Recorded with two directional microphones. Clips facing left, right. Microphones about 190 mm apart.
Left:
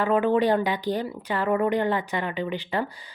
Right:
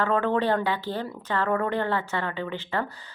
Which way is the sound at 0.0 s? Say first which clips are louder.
Left 3 dB; 15° left (ahead or behind).